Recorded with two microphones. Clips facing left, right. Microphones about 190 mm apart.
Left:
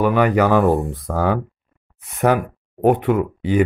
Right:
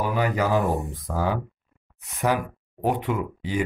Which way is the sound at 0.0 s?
70° left (ahead or behind).